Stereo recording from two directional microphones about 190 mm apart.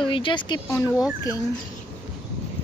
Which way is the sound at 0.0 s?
25° left (ahead or behind).